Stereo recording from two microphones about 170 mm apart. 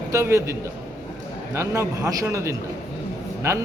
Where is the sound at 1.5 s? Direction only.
15° right (ahead or behind).